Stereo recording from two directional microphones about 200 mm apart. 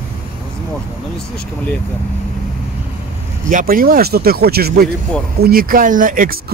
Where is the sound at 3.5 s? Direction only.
45° right (ahead or behind).